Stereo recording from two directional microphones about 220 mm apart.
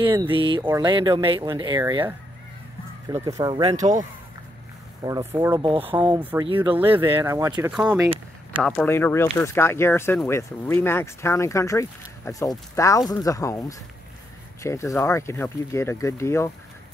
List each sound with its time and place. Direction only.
0.0 s speech: 20° right (ahead or behind)
5.0 s speech: 15° right (ahead or behind)
5.7 s speech: 25° right (ahead or behind); by 16.4 s 10° left (ahead or behind)